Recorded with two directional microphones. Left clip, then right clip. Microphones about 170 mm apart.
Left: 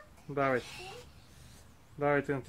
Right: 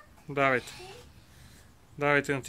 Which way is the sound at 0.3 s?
20° right (ahead or behind).